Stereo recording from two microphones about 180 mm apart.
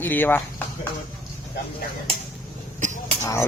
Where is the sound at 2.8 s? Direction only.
40° right (ahead or behind).